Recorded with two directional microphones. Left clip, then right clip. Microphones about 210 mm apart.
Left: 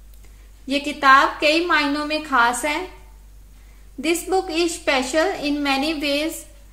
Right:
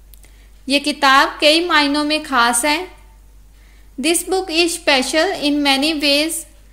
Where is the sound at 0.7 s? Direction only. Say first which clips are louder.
Right 1 dB; 40° right (ahead or behind).